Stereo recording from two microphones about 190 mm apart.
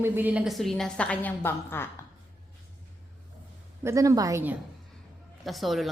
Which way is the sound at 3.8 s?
15° right (ahead or behind).